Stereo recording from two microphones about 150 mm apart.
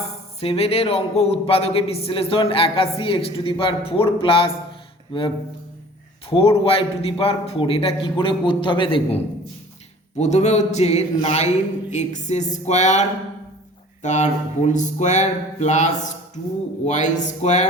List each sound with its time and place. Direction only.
0.3 s speech: 40° left (ahead or behind)
6.3 s speech: 40° left (ahead or behind)
10.2 s speech: 50° left (ahead or behind)